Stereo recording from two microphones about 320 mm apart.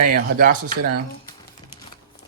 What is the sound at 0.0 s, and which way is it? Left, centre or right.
Speech, right.